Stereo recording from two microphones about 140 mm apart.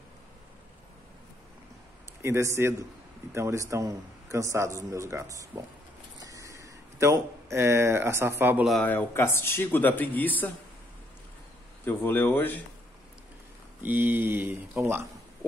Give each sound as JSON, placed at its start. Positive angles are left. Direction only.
{"t": 2.2, "sound": "a man's voice", "side_deg": -20}
{"t": 6.1, "sound": "a sound", "side_deg": -25}
{"t": 8.8, "sound": "speech", "side_deg": 15}
{"t": 11.8, "sound": "speech", "side_deg": 15}
{"t": 13.8, "sound": "speech", "side_deg": -15}